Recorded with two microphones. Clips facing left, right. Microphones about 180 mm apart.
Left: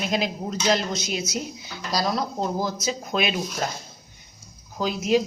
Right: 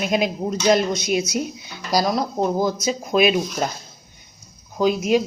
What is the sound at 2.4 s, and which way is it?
Speech, 15° right (ahead or behind).